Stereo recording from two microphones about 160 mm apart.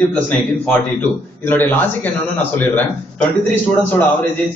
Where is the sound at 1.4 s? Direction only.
10° left (ahead or behind).